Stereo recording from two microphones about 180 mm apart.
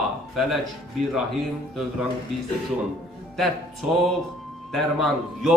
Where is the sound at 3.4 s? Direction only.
Centre (ahead or behind).